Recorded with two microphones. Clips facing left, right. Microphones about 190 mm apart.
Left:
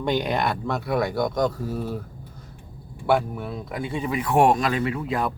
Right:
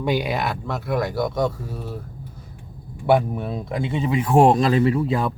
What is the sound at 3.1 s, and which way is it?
Speech, 20° right (ahead or behind).